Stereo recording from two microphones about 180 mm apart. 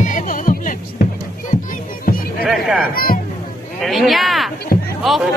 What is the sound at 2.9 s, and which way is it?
Music, 55° left (ahead or behind).